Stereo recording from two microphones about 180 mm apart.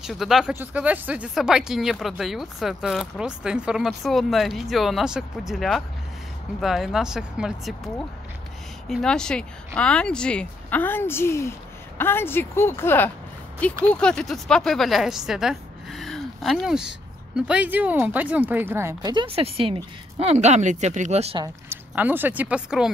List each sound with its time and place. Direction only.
0.0 s speech: centre (ahead or behind)
19.1 s speech: 30° right (ahead or behind)
21.6 s speech: 10° right (ahead or behind)